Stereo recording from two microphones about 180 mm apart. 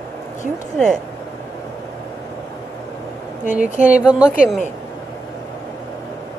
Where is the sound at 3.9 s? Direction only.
5° right (ahead or behind).